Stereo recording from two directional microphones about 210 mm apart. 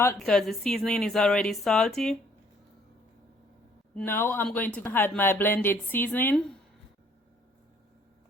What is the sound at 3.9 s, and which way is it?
Speech, 10° left (ahead or behind).